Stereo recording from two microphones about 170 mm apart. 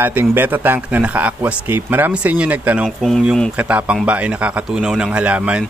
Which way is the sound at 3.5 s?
10° right (ahead or behind).